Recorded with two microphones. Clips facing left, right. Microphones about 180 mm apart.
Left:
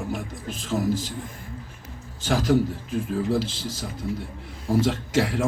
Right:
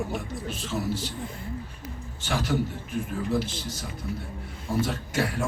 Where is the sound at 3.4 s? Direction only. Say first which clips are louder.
Left 2 dB; 90° left.